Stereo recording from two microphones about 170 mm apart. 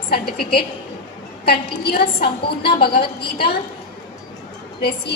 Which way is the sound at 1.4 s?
65° left (ahead or behind).